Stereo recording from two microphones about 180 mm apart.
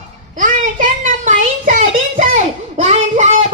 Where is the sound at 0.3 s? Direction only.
45° right (ahead or behind).